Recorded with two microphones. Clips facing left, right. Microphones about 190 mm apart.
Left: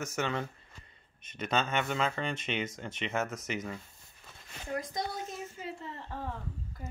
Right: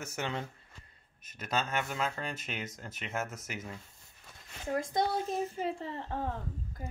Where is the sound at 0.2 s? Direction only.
15° right (ahead or behind).